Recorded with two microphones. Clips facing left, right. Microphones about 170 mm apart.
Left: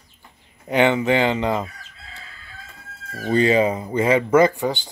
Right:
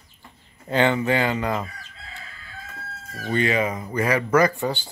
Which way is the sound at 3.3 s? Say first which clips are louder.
Left 5 dB; 30° left (ahead or behind).